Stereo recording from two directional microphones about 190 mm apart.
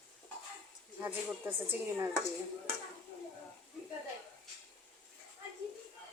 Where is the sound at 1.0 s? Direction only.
10° right (ahead or behind).